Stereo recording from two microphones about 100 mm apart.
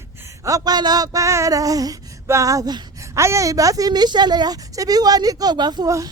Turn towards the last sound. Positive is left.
turn(degrees=-45)  # may be behind; listen again after turning